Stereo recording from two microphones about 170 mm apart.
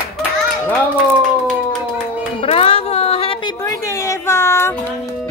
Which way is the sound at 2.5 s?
35° left (ahead or behind).